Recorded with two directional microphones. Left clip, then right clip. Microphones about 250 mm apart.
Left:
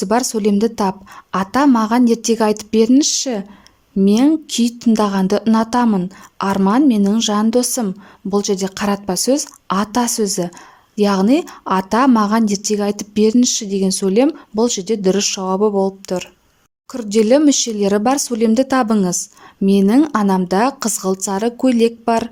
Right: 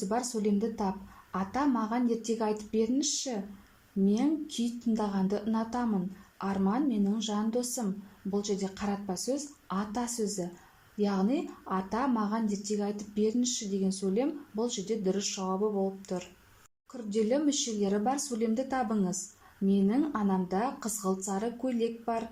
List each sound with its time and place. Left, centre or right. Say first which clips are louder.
0.0 s a woman's voice: left 15 dB; left